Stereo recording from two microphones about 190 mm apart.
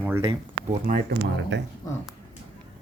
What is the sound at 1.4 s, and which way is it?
Speech, 70° right (ahead or behind).